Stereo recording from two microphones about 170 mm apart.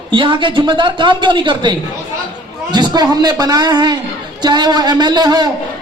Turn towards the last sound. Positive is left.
turn(degrees=-25)  # may be behind; listen again after turning